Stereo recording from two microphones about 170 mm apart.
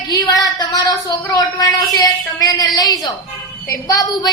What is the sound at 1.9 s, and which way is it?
A woman's voice, 20° left (ahead or behind).